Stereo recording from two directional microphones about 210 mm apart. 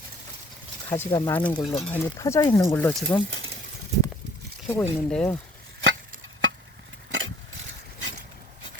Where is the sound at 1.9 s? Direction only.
10° left (ahead or behind).